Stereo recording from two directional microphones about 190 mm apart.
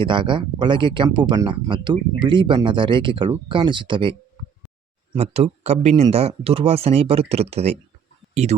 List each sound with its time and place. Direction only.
0.0 s speech: 25° right (ahead or behind)
5.1 s speech: 35° right (ahead or behind)